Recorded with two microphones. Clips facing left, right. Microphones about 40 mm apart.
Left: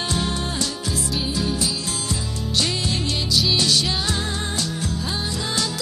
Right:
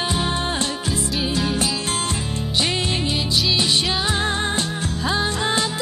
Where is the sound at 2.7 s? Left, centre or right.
Right.